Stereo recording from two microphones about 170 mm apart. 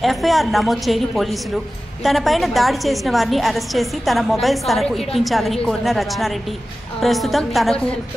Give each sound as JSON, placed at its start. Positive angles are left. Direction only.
{"t": 0.0, "sound": "a woman's voice", "side_deg": 0}